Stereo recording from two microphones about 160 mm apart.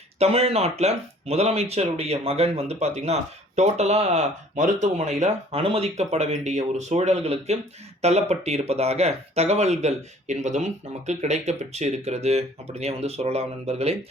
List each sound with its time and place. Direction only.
0.2 s speech: 40° right (ahead or behind)